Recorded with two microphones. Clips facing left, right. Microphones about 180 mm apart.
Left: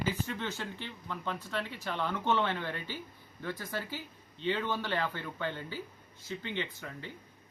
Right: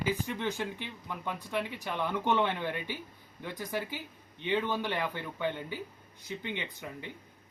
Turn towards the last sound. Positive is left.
turn(degrees=-15)  # may be behind; listen again after turning